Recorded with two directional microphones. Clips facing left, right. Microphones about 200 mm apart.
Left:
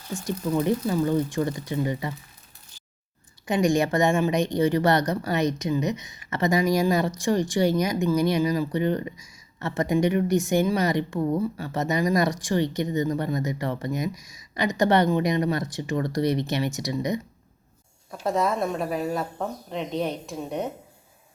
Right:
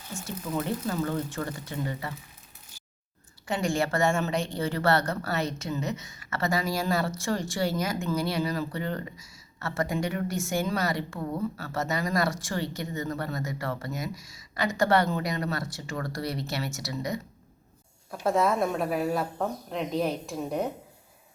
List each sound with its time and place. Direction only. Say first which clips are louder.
0.6 s a woman's voice: left 6 dB; 15° left (ahead or behind)
3.4 s a woman's voice: left 6 dB; 15° left (ahead or behind)
18.1 s speech: even; centre (ahead or behind)